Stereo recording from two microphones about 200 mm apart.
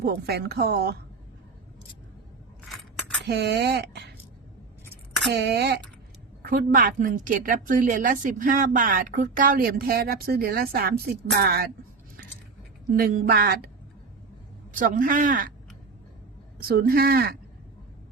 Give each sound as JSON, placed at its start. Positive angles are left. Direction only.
{"t": 0.0, "sound": "a woman's voice", "side_deg": -55}
{"t": 3.2, "sound": "speech", "side_deg": -55}
{"t": 5.3, "sound": "speech", "side_deg": -55}
{"t": 6.4, "sound": "a woman's voice", "side_deg": -45}
{"t": 12.9, "sound": "a woman's voice", "side_deg": -45}
{"t": 14.8, "sound": "a woman's voice", "side_deg": -45}
{"t": 16.6, "sound": "a woman's voice", "side_deg": -45}